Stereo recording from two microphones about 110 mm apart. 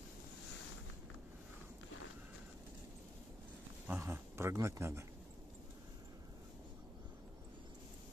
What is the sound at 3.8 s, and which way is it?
Speech, 20° right (ahead or behind).